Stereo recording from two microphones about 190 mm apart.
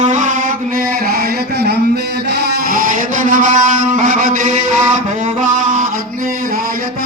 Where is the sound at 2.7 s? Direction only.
45° right (ahead or behind).